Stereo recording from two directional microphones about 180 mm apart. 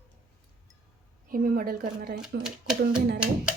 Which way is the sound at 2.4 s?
5° right (ahead or behind).